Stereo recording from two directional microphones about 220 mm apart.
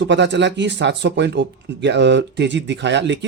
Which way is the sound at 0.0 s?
55° right (ahead or behind).